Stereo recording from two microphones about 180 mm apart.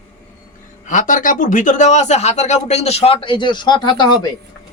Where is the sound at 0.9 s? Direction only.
45° left (ahead or behind).